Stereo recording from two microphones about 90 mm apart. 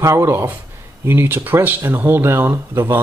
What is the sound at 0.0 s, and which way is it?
Speech, 30° right (ahead or behind).